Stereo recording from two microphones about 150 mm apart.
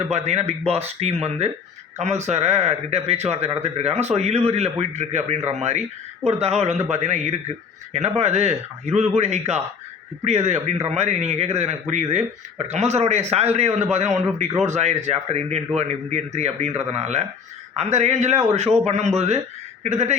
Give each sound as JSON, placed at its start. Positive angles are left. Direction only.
{"t": 0.1, "sound": "speech", "side_deg": -45}